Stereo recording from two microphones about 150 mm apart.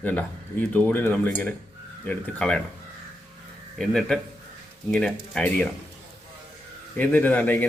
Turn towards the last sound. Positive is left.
turn(degrees=10)  # may be behind; listen again after turning